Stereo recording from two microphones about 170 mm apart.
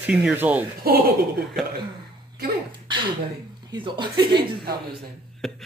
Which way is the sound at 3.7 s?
25° right (ahead or behind).